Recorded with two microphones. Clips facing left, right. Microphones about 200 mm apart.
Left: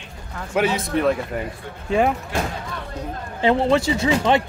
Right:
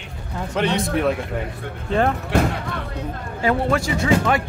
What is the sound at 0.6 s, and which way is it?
Speech, 5° left (ahead or behind).